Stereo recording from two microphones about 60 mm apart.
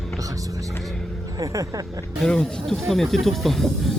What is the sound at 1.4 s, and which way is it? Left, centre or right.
Speech, right.